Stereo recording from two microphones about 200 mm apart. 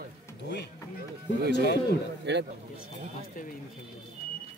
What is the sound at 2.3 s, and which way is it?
Speech, 60° right (ahead or behind).